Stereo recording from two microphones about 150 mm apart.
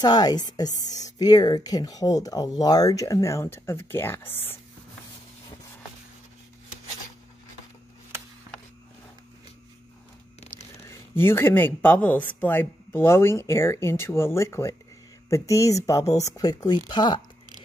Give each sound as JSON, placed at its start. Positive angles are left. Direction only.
{"t": 0.0, "sound": "speech", "side_deg": 25}
{"t": 10.9, "sound": "speech", "side_deg": 15}